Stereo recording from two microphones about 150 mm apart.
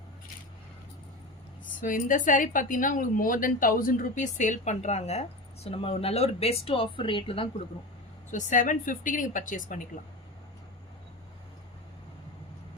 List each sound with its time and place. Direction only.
1.8 s a woman's voice: 60° left (ahead or behind); by 7.4 s 35° left (ahead or behind)
8.3 s a woman's voice: 55° left (ahead or behind)